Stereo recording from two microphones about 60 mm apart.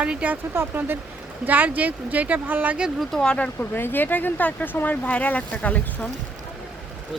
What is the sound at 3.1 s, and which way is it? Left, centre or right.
Speech, centre.